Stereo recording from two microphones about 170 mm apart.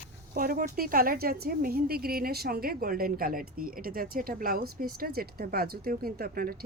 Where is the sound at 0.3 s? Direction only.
55° right (ahead or behind).